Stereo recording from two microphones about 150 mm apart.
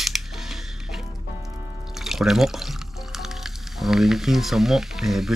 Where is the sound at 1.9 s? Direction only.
Centre (ahead or behind).